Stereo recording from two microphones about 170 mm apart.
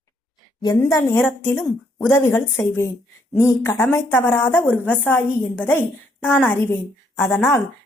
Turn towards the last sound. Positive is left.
turn(degrees=15)  # may be behind; listen again after turning